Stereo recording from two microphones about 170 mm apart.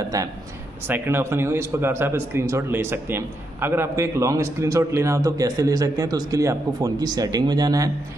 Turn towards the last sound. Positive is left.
turn(degrees=-20)  # may be behind; listen again after turning